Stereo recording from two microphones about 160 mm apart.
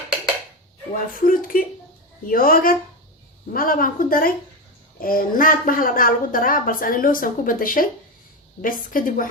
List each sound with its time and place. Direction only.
0.9 s a woman's voice: 60° left (ahead or behind)